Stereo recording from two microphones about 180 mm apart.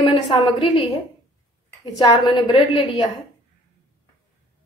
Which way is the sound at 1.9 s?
20° left (ahead or behind).